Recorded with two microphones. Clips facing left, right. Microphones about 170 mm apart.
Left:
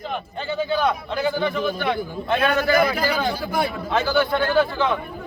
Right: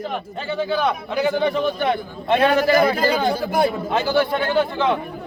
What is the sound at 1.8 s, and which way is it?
A man's voice, 30° right (ahead or behind).